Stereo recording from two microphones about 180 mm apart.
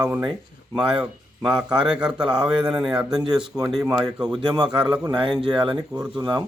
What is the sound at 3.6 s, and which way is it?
Speech, 20° right (ahead or behind).